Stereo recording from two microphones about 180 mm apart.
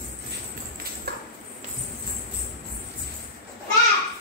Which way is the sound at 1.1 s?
60° right (ahead or behind).